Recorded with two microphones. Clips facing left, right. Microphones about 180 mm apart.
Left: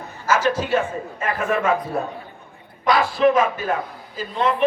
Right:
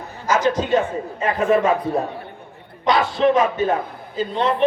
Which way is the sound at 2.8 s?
25° right (ahead or behind).